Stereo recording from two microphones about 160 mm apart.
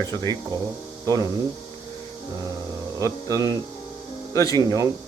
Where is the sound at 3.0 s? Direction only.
25° right (ahead or behind).